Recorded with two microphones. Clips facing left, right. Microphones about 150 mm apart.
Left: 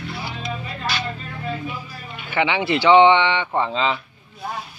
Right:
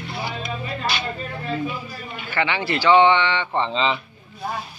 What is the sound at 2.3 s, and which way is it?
Speech, 15° left (ahead or behind).